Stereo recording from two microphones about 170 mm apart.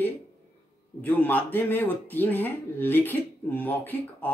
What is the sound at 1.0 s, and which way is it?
Speech, 10° left (ahead or behind).